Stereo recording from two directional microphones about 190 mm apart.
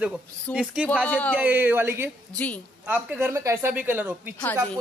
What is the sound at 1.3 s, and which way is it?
A man's voice, 10° right (ahead or behind).